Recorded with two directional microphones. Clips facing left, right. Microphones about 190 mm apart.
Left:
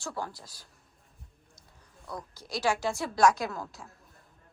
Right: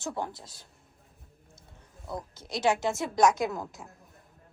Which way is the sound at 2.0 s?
25° right (ahead or behind).